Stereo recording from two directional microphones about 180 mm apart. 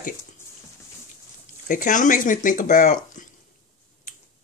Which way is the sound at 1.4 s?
45° left (ahead or behind).